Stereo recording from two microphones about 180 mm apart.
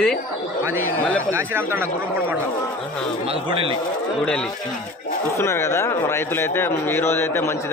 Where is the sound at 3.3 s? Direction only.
30° right (ahead or behind).